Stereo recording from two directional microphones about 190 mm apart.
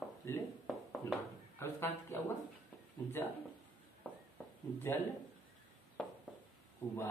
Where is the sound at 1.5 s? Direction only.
10° left (ahead or behind).